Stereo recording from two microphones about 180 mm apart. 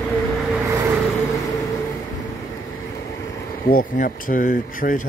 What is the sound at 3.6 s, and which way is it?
Speech, 50° left (ahead or behind).